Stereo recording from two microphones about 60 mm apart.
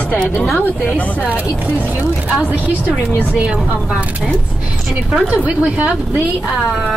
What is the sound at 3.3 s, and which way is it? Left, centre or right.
Speech, centre.